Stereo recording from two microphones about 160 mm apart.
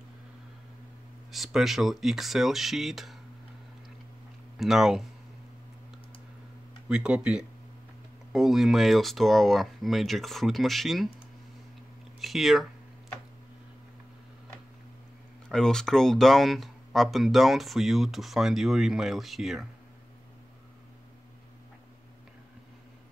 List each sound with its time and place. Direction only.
1.3 s speech: centre (ahead or behind)
4.6 s speech: centre (ahead or behind)
6.9 s speech: 5° right (ahead or behind)
12.2 s speech: centre (ahead or behind)
15.4 s speech: 5° left (ahead or behind)